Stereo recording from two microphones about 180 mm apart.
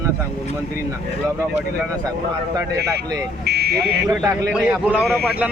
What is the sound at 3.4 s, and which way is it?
Speech, 65° right (ahead or behind).